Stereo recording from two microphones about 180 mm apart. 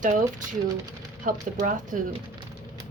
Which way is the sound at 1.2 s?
45° right (ahead or behind).